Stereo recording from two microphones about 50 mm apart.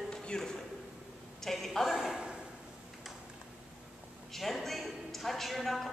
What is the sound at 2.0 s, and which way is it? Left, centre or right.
Speech, centre.